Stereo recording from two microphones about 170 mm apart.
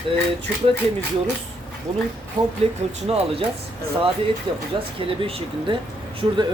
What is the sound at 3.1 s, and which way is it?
Speech, 35° right (ahead or behind).